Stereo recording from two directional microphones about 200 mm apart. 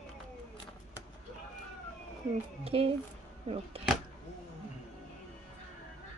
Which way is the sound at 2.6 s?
30° right (ahead or behind).